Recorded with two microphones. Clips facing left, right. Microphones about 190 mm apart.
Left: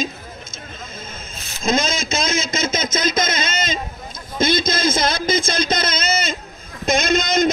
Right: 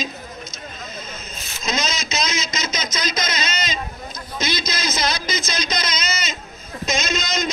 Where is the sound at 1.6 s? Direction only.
50° left (ahead or behind).